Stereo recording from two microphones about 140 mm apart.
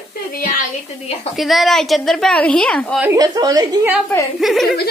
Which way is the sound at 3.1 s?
25° right (ahead or behind).